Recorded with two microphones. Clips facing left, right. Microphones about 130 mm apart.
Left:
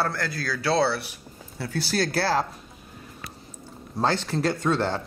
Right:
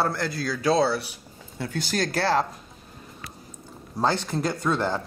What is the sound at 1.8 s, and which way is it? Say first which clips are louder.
Speech: left 1 dB; 5° left (ahead or behind).